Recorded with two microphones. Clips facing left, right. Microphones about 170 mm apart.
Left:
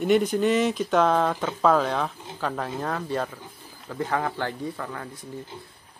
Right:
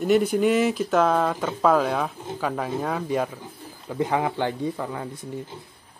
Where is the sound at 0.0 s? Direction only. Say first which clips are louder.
Right 1 dB; 5° right (ahead or behind).